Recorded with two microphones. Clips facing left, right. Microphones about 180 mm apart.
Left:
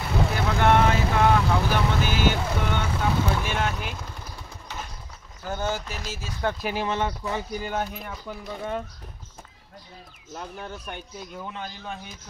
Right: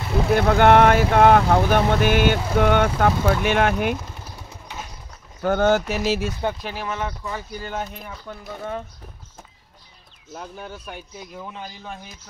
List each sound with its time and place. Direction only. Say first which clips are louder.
0.5 s speech: right 6 dB; 65° right (ahead or behind)
4.2 s vehicle: right 1 dB; 5° right (ahead or behind)
5.4 s speech: right 11 dB; 70° right (ahead or behind)
6.7 s speech: left 2 dB; 25° left (ahead or behind)
7.5 s a man's voice: left 1 dB; 5° left (ahead or behind)
10.3 s a man's voice: right 1 dB; 5° right (ahead or behind)